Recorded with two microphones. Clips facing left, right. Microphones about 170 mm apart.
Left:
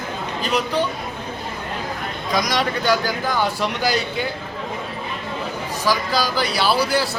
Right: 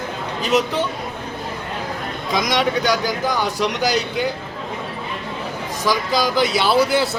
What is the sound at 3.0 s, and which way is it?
Speech, 15° right (ahead or behind).